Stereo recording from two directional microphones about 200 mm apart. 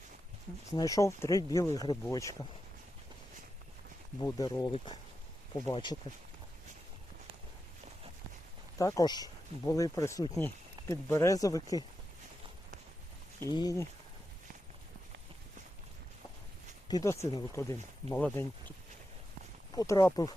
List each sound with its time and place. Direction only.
0.8 s speech: 15° left (ahead or behind)
4.2 s speech: 20° left (ahead or behind)
8.8 s speech: 15° left (ahead or behind)
13.5 s speech: 20° left (ahead or behind)
16.9 s speech: 15° left (ahead or behind)
19.7 s speech: 15° left (ahead or behind)